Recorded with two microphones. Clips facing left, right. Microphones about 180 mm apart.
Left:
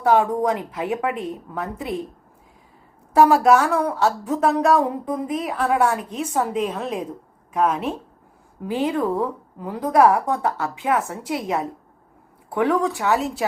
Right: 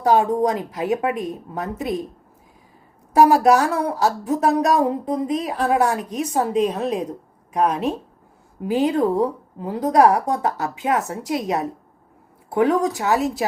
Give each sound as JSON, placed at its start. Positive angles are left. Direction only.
{"t": 0.0, "sound": "a woman's voice", "side_deg": -20}
{"t": 3.8, "sound": "speech", "side_deg": -30}
{"t": 4.2, "sound": "a woman's voice", "side_deg": -15}